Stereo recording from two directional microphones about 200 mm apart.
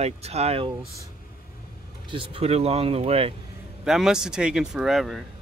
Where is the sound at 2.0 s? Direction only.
25° right (ahead or behind).